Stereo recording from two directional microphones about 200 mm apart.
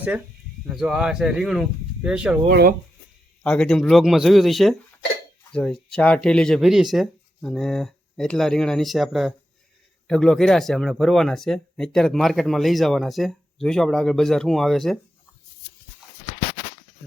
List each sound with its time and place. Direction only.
0.7 s speech: centre (ahead or behind)
2.5 s speech: 50° right (ahead or behind)
3.4 s speech: 5° left (ahead or behind)